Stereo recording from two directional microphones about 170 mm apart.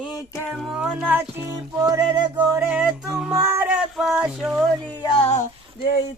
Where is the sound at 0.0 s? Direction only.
25° left (ahead or behind).